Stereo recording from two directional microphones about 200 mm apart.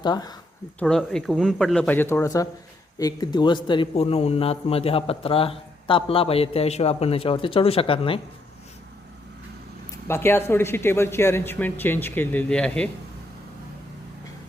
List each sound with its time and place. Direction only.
0.0 s a man's voice: 20° left (ahead or behind)
0.8 s a man's voice: 5° left (ahead or behind); by 8.2 s 25° left (ahead or behind)
10.1 s speech: 10° left (ahead or behind)